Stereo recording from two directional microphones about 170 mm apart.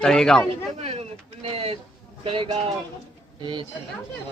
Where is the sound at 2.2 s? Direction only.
35° right (ahead or behind).